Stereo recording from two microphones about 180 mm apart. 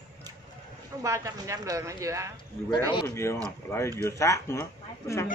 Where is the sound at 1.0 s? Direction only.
15° right (ahead or behind).